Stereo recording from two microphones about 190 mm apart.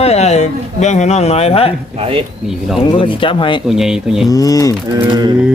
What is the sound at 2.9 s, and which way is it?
Speech, 25° left (ahead or behind).